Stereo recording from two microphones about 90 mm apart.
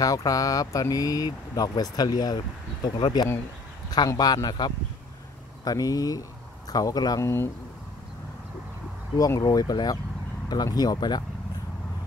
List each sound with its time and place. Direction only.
0.0 s speech: 40° left (ahead or behind)
4.1 s speech: 45° left (ahead or behind)
7.2 s speech: 30° left (ahead or behind)
9.4 s speech: 45° left (ahead or behind)